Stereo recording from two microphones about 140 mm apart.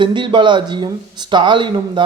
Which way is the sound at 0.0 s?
35° right (ahead or behind).